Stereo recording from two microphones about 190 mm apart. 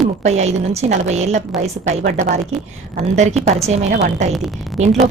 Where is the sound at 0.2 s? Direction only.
35° right (ahead or behind).